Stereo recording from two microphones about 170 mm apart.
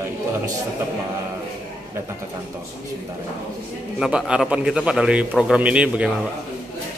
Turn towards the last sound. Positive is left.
turn(degrees=-5)  # may be behind; listen again after turning